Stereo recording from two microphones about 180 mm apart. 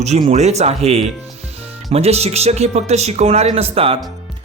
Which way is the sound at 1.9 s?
35° right (ahead or behind).